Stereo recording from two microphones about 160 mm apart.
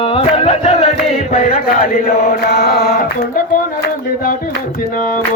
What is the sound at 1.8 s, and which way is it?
Chant, 65° left (ahead or behind).